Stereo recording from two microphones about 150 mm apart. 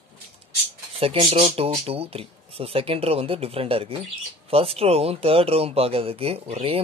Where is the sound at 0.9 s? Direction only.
40° right (ahead or behind).